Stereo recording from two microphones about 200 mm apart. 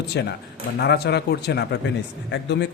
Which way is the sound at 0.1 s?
55° left (ahead or behind).